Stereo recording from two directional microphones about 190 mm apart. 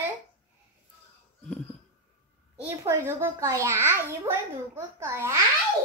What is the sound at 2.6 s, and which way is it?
A child's voice, 15° right (ahead or behind).